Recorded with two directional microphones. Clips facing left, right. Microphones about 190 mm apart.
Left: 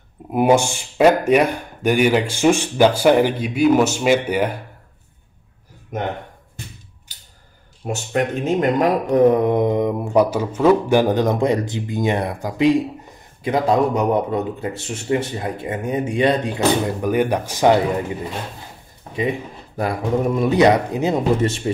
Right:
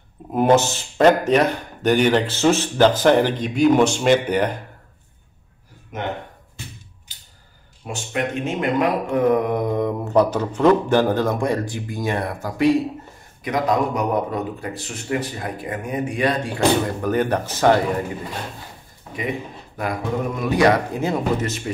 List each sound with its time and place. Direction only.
0.3 s speech: 10° left (ahead or behind)
7.8 s speech: 40° left (ahead or behind); by 12.8 s 15° left (ahead or behind)
13.4 s speech: 30° left (ahead or behind)
19.8 s speech: 30° left (ahead or behind)